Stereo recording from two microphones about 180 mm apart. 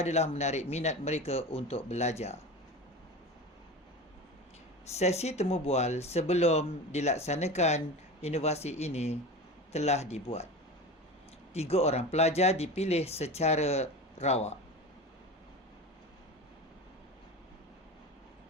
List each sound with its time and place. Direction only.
0.0 s speech: 35° left (ahead or behind)
4.9 s speech: 35° left (ahead or behind)
11.5 s speech: 35° left (ahead or behind)